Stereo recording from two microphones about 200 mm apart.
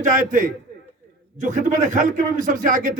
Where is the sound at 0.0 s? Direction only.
40° right (ahead or behind).